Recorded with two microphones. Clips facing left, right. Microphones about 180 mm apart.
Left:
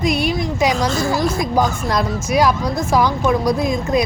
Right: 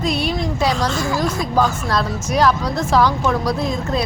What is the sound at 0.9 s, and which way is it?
Speech, 40° left (ahead or behind).